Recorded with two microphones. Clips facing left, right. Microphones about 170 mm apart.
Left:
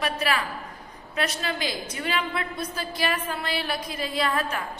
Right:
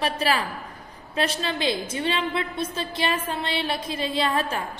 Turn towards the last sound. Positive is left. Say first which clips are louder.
# right 2 dB
turn(degrees=-30)  # may be behind; listen again after turning